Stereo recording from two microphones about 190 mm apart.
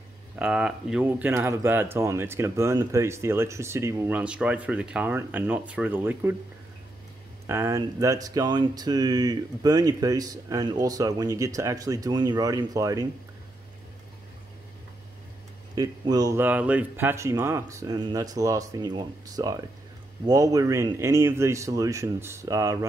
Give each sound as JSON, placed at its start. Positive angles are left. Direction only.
{"t": 0.4, "sound": "speech", "side_deg": -5}
{"t": 7.4, "sound": "speech", "side_deg": -15}
{"t": 15.7, "sound": "speech", "side_deg": -20}